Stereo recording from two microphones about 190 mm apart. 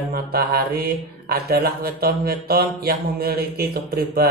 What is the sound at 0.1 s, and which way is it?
Speech, 55° right (ahead or behind).